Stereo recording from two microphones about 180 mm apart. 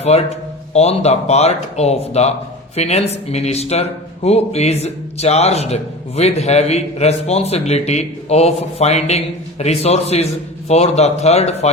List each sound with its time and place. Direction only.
0.0 s a man's voice: 35° left (ahead or behind)